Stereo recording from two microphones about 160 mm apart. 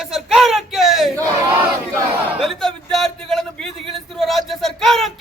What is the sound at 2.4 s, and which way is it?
A man's voice, centre (ahead or behind).